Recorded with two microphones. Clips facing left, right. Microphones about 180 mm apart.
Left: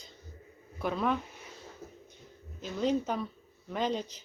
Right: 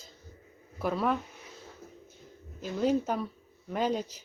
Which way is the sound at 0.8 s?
5° right (ahead or behind).